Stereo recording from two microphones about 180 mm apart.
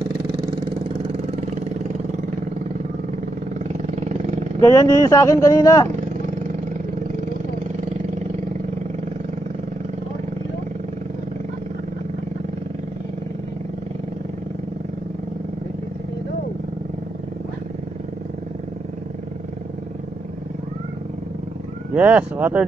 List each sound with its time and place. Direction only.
0.4 s vehicle: 35° right (ahead or behind)
3.6 s vehicle: 40° right (ahead or behind)
4.6 s speech: 15° left (ahead or behind)
5.9 s vehicle: 45° right (ahead or behind)
21.9 s speech: 10° right (ahead or behind)